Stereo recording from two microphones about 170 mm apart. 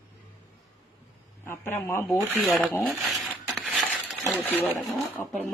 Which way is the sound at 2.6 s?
5° left (ahead or behind).